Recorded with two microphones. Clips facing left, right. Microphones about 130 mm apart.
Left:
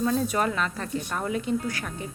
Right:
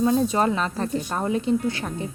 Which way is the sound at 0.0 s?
25° right (ahead or behind).